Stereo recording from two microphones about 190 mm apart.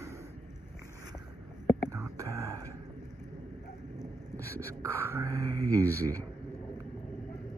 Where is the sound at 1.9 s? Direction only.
15° right (ahead or behind).